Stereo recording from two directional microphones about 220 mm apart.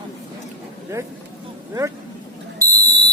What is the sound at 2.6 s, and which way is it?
Smoke detector, 15° right (ahead or behind).